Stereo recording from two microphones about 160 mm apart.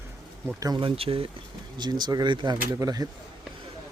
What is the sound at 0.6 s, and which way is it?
Speech, 25° right (ahead or behind).